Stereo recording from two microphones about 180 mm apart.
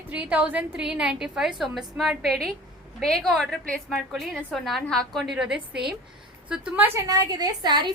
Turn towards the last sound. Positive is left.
turn(degrees=-25)  # may be behind; listen again after turning